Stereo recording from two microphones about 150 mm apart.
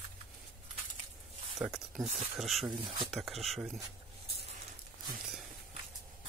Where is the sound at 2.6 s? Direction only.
35° right (ahead or behind).